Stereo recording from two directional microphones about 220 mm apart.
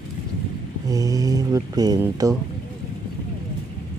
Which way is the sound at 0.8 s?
15° right (ahead or behind).